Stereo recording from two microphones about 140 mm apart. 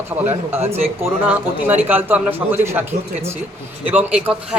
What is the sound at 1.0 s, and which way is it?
Speech, 15° right (ahead or behind).